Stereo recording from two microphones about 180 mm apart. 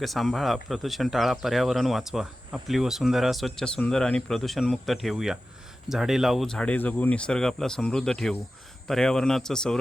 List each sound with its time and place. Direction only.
0.0 s speech: centre (ahead or behind)